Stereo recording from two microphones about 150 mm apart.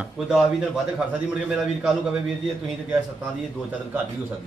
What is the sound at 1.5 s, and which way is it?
Speech, 5° right (ahead or behind).